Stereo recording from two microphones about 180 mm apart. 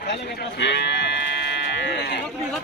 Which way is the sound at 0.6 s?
75° left (ahead or behind).